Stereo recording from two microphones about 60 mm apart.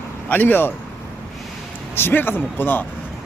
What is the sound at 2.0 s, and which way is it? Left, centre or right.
Speech, left.